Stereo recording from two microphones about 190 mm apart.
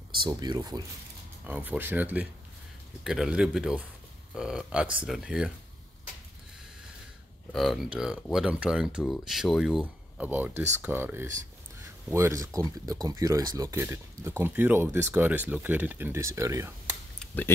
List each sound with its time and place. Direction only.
0.1 s speech: 25° right (ahead or behind)
1.4 s speech: 10° right (ahead or behind)
7.5 s speech: centre (ahead or behind)